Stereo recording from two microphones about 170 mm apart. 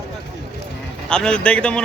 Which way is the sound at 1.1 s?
5° left (ahead or behind).